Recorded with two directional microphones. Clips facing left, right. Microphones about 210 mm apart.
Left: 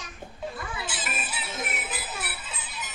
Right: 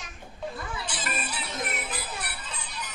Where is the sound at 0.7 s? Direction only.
5° left (ahead or behind).